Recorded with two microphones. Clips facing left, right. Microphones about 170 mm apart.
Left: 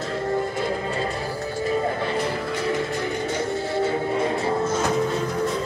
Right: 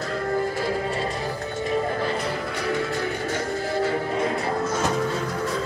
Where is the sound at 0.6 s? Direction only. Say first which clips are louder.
Even; 30° left (ahead or behind).